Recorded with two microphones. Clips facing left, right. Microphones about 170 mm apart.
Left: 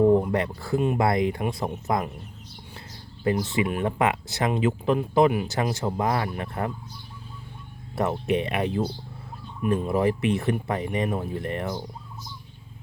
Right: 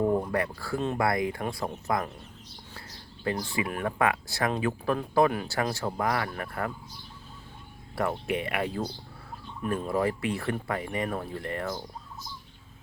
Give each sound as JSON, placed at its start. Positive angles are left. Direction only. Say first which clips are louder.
{"t": 0.3, "sound": "speech", "louder": "left 4 dB", "side_deg": 25}
{"t": 3.2, "sound": "speech", "louder": "left 6 dB", "side_deg": 20}
{"t": 5.3, "sound": "speech", "louder": "left 4 dB", "side_deg": 10}
{"t": 7.9, "sound": "speech", "louder": "left 5 dB", "side_deg": 25}